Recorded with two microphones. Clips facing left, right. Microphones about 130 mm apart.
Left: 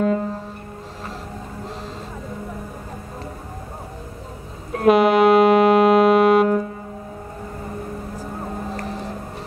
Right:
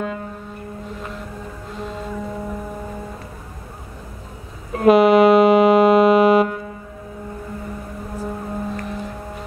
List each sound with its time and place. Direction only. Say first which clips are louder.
0.0 s a sound: left 7 dB; 40° left (ahead or behind)
4.7 s music: right 2 dB; centre (ahead or behind)
8.7 s music: even; 35° left (ahead or behind)